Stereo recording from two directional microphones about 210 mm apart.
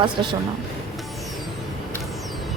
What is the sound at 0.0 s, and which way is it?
Speech, 20° right (ahead or behind).